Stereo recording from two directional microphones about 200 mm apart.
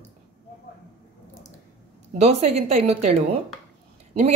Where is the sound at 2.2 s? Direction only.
35° right (ahead or behind).